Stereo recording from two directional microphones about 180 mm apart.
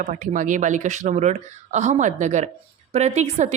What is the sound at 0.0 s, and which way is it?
A woman's voice, 45° right (ahead or behind).